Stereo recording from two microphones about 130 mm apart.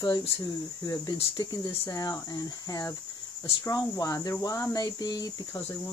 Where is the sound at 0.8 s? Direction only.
30° left (ahead or behind).